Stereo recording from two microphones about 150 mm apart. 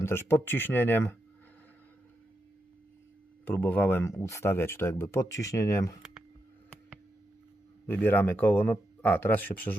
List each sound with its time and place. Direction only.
0.0 s speech: 15° left (ahead or behind)
3.4 s speech: 10° left (ahead or behind)
7.9 s speech: 15° left (ahead or behind)